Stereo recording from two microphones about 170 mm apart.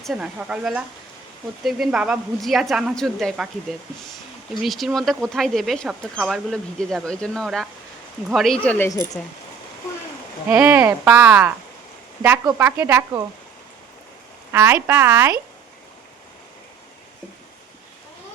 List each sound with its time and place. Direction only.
0.0 s a woman's voice: 5° right (ahead or behind)
10.5 s speech: 10° right (ahead or behind)
14.5 s speech: 10° right (ahead or behind)